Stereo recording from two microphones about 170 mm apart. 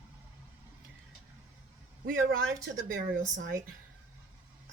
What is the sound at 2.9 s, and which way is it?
Speech, 75° right (ahead or behind).